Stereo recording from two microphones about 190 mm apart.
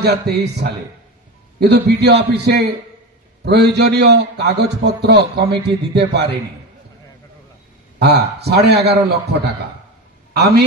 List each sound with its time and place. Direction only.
0.0 s a man's voice: 60° right (ahead or behind)
8.0 s a man's voice: 60° right (ahead or behind)